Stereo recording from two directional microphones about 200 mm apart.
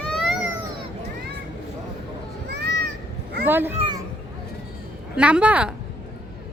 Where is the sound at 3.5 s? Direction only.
10° right (ahead or behind).